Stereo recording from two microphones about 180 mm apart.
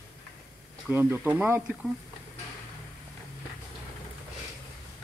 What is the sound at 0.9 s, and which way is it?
Speech, 10° right (ahead or behind).